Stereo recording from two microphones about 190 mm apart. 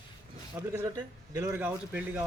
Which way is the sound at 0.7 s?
15° right (ahead or behind).